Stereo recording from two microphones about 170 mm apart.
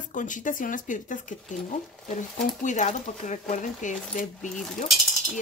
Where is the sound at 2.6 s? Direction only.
45° left (ahead or behind).